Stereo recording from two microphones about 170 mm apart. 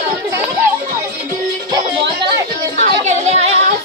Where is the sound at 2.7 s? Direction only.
45° right (ahead or behind).